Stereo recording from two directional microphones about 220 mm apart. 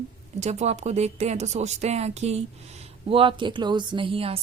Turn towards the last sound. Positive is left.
turn(degrees=-25)  # may be behind; listen again after turning